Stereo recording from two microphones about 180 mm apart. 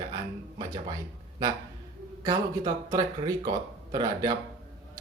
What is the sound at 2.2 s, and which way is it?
Speech, 20° right (ahead or behind).